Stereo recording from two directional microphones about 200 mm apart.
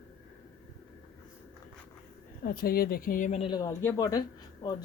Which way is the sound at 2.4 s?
50° left (ahead or behind).